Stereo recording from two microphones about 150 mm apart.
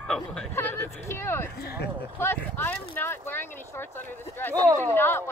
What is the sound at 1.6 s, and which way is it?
Speech, 90° left.